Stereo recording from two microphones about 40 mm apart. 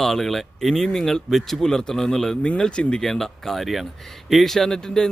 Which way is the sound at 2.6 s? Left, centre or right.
Left.